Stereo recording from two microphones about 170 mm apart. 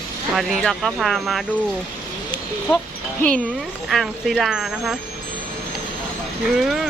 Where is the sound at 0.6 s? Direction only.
Centre (ahead or behind).